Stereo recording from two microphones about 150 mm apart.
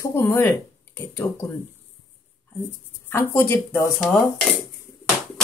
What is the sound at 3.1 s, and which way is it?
Speech, 15° left (ahead or behind).